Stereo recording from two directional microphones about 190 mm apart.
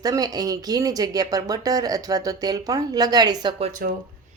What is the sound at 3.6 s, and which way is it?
Speech, 45° right (ahead or behind).